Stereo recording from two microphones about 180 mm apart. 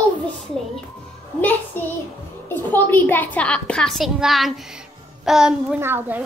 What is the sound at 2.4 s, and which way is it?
A woman's voice, 10° left (ahead or behind).